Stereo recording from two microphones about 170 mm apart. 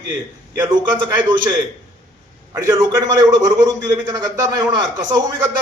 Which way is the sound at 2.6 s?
20° right (ahead or behind).